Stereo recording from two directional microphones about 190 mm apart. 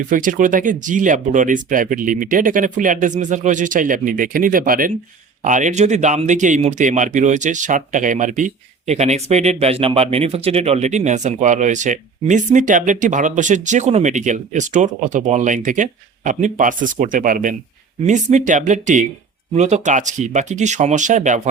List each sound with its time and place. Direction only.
0.0 s speech: 45° right (ahead or behind)